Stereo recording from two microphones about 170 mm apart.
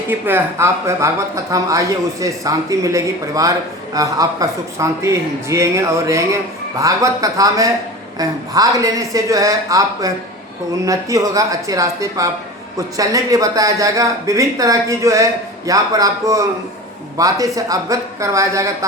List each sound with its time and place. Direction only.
0.1 s a man's voice: 10° right (ahead or behind)